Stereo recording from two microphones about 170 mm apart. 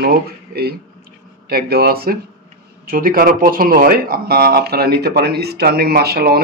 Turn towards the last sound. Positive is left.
turn(degrees=-65)  # may be behind; listen again after turning